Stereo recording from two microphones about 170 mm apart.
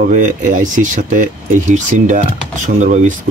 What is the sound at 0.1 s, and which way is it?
Speech, 50° right (ahead or behind).